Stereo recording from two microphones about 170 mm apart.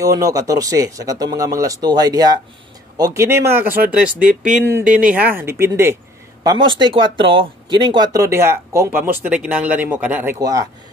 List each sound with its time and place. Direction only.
0.0 s speech: 20° right (ahead or behind)
6.4 s speech: 25° right (ahead or behind); by 10.3 s 10° right (ahead or behind)